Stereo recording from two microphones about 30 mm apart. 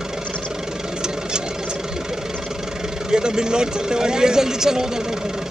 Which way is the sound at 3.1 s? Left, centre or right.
Right.